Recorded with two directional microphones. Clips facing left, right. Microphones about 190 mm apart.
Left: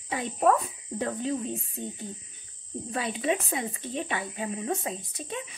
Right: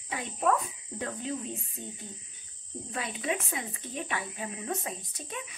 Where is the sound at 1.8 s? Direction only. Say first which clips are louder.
Left 6 dB; 30° left (ahead or behind).